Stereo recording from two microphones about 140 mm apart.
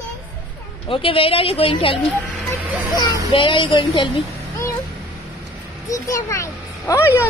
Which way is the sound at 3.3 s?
35° left (ahead or behind).